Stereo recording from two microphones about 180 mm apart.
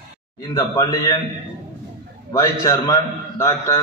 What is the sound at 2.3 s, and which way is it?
Speech, 20° left (ahead or behind).